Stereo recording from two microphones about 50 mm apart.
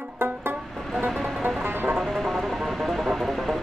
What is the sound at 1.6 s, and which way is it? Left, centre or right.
Music, right.